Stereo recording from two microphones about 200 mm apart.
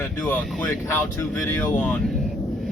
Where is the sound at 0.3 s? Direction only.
10° left (ahead or behind).